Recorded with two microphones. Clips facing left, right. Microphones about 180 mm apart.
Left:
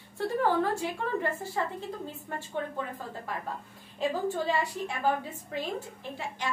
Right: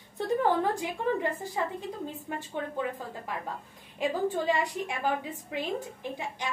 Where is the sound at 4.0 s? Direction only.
15° right (ahead or behind).